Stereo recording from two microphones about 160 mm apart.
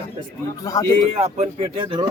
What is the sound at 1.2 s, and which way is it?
Speech, 35° right (ahead or behind).